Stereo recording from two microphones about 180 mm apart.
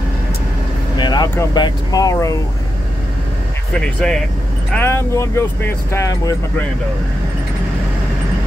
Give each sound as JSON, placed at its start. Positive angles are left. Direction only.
{"t": 0.9, "sound": "vehicle", "side_deg": 25}
{"t": 1.3, "sound": "speech", "side_deg": 20}
{"t": 3.8, "sound": "speech", "side_deg": 5}